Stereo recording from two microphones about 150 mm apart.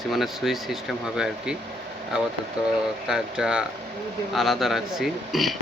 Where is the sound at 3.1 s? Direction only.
5° right (ahead or behind).